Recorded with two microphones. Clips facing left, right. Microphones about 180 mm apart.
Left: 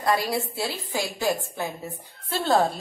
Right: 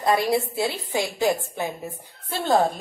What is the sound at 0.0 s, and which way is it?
A woman's voice, 20° right (ahead or behind).